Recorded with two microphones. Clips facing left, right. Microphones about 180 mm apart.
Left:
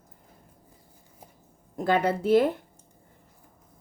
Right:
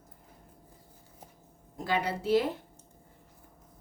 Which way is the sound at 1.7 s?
55° left (ahead or behind).